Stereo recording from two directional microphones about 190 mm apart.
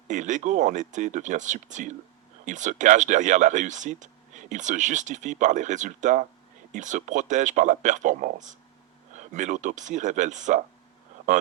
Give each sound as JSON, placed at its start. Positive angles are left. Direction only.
{"t": 0.1, "sound": "speech", "side_deg": -40}